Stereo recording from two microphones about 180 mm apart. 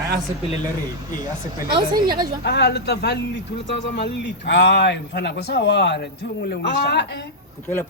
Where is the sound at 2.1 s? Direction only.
55° right (ahead or behind).